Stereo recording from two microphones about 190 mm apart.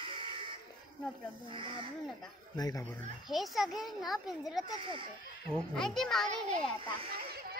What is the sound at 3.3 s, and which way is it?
A child's voice, centre (ahead or behind).